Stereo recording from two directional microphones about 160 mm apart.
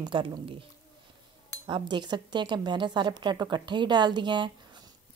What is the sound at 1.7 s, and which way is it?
A woman's voice, 30° right (ahead or behind).